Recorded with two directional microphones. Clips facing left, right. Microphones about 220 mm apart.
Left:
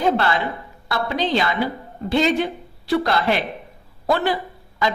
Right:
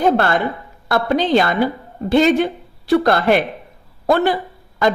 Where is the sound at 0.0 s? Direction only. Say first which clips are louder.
Right 4 dB; 50° right (ahead or behind).